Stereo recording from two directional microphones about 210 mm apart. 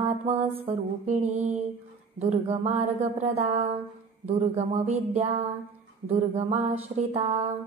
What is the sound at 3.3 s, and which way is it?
Music, 30° right (ahead or behind).